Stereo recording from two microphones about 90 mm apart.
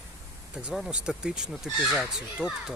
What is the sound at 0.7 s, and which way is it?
Speech, 5° right (ahead or behind).